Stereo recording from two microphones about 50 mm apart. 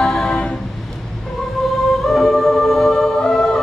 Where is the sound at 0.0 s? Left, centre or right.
Centre.